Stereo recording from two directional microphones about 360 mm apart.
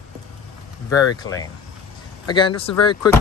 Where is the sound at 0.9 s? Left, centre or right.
Centre.